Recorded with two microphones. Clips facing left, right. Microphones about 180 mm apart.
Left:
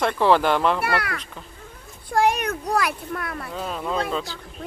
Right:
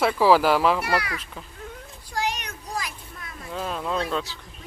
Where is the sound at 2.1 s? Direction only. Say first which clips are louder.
Left 9 dB; 55° left (ahead or behind).